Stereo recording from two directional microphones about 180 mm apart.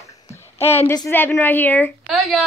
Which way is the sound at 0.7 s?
15° left (ahead or behind).